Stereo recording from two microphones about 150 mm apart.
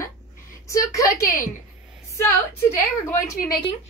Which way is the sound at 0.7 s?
20° left (ahead or behind).